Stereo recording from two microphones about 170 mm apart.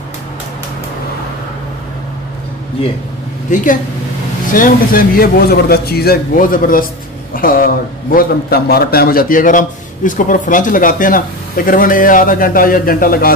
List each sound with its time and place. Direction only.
2.8 s speech: 30° left (ahead or behind)
4.6 s a man's voice: 60° left (ahead or behind)